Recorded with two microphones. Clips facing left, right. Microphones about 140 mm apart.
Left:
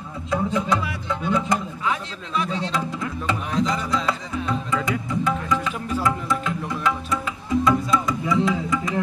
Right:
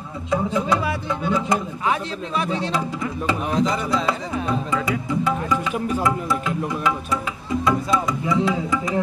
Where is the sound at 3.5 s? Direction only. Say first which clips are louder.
Right 2 dB; 30° right (ahead or behind).